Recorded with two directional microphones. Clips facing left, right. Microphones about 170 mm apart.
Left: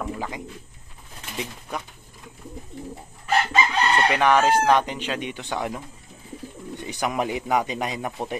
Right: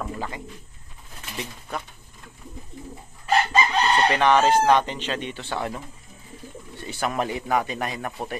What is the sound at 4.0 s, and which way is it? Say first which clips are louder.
Speech: even; 10° left (ahead or behind).